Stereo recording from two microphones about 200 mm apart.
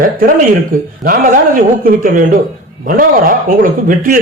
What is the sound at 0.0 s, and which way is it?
Speech, 45° right (ahead or behind).